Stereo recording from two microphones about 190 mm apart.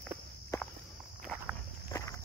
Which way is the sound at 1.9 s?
15° left (ahead or behind).